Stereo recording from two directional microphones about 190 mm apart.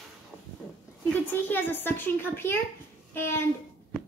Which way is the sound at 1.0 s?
10° left (ahead or behind).